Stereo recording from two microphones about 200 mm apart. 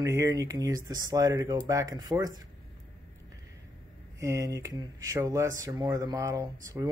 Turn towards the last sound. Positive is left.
turn(degrees=-15)  # may be behind; listen again after turning